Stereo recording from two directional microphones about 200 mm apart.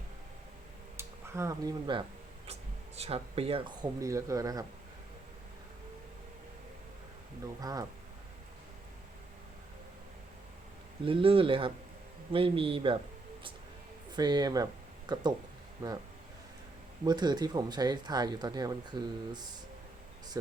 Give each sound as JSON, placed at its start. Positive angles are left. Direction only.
{"t": 0.9, "sound": "speech", "side_deg": -15}
{"t": 2.5, "sound": "speech", "side_deg": -30}
{"t": 7.6, "sound": "speech", "side_deg": -20}
{"t": 11.0, "sound": "speech", "side_deg": -30}
{"t": 14.2, "sound": "speech", "side_deg": -20}
{"t": 17.0, "sound": "speech", "side_deg": -20}